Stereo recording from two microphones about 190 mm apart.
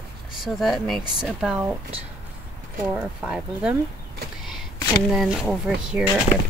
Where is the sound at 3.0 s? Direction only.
5° right (ahead or behind).